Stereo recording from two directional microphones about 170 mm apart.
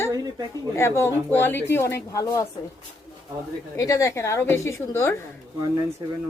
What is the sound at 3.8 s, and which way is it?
Speech, 20° left (ahead or behind).